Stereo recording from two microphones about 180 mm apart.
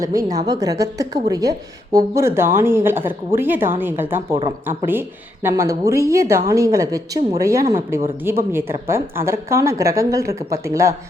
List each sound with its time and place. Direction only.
0.0 s a woman's voice: 20° right (ahead or behind)